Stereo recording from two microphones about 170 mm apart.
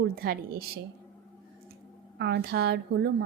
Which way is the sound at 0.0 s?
65° right (ahead or behind).